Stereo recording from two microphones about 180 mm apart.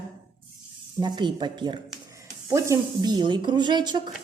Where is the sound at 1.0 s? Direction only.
25° right (ahead or behind).